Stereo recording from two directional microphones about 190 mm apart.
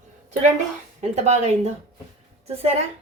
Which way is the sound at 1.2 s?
35° right (ahead or behind).